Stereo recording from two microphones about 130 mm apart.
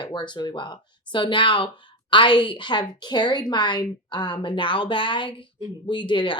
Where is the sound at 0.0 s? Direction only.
35° left (ahead or behind).